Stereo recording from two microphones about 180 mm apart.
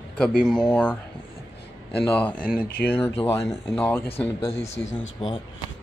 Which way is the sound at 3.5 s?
15° left (ahead or behind).